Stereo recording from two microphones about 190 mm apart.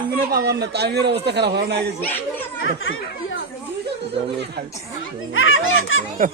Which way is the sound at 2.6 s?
90° left.